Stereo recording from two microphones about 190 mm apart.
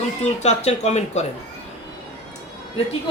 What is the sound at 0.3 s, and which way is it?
Speech, 35° left (ahead or behind).